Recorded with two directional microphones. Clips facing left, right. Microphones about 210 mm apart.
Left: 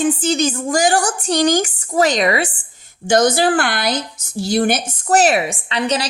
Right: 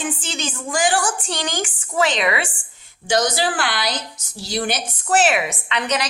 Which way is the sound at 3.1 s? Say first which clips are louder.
Left 6 dB; 50° left (ahead or behind).